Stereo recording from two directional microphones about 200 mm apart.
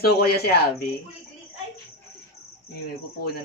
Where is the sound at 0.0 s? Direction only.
50° left (ahead or behind).